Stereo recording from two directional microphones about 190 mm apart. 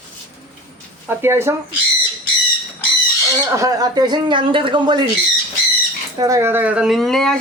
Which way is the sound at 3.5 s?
20° right (ahead or behind).